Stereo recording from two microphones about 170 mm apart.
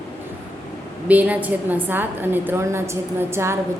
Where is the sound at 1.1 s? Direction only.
10° right (ahead or behind).